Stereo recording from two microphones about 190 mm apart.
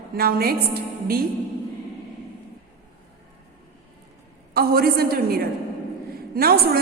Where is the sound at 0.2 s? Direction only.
55° right (ahead or behind).